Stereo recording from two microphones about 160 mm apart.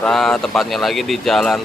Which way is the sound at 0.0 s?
5° left (ahead or behind).